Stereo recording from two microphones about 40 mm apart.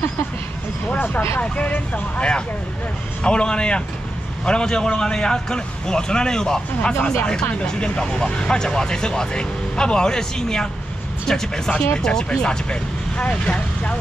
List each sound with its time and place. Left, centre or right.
2.1 s speech: left
7.6 s speech: left
13.2 s speech: left